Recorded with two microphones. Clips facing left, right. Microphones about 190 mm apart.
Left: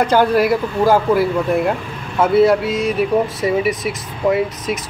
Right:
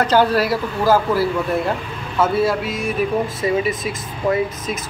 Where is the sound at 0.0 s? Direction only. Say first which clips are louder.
Left 2 dB; 15° left (ahead or behind).